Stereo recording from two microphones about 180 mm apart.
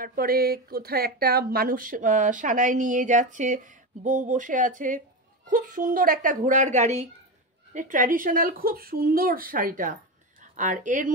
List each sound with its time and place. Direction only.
0.0 s speech: 50° right (ahead or behind)